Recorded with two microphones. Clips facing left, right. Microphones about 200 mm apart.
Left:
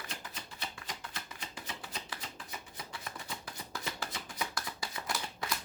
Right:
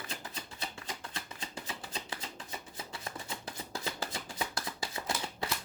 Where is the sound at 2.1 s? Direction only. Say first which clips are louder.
Right 2 dB; 25° right (ahead or behind).